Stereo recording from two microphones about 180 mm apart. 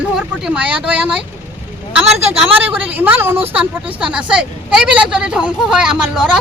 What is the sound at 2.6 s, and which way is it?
Speech, 10° right (ahead or behind).